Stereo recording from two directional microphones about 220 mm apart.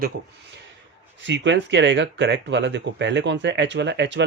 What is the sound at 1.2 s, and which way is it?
Speech, 55° right (ahead or behind).